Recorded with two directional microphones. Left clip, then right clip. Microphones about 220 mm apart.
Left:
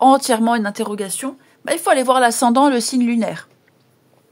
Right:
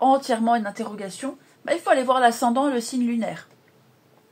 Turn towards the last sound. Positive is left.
turn(degrees=50)  # may be behind; listen again after turning